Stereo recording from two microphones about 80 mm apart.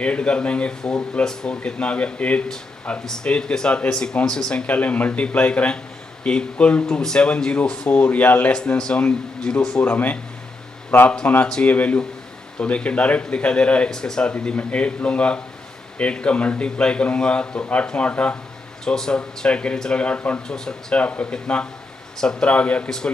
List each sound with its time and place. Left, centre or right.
0.0 s speech: centre
9.8 s speech: left